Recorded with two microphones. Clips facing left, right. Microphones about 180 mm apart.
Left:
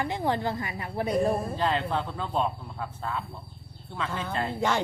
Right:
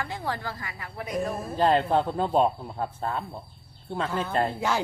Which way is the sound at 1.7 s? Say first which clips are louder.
Right 6 dB; 45° right (ahead or behind).